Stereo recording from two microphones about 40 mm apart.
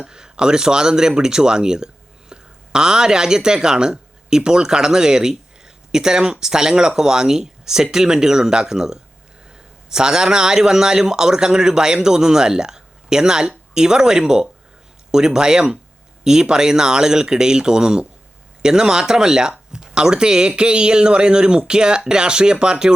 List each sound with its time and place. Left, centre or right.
0.0 s a man's voice: centre